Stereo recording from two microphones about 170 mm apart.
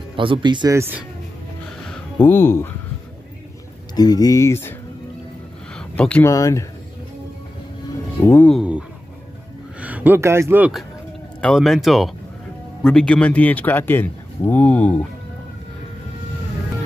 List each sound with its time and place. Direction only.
0.1 s speech: 30° right (ahead or behind)
0.7 s speech: 10° right (ahead or behind)
2.1 s speech: 15° left (ahead or behind)
3.9 s speech: 25° left (ahead or behind)
5.8 s a sound: 5° left (ahead or behind)
6.3 s speech: 20° left (ahead or behind)
8.2 s speech: 10° left (ahead or behind)
8.5 s speech: 5° right (ahead or behind)
11.4 s speech: centre (ahead or behind)